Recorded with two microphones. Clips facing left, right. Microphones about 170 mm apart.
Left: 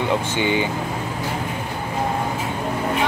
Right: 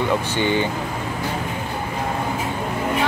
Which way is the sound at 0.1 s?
15° left (ahead or behind).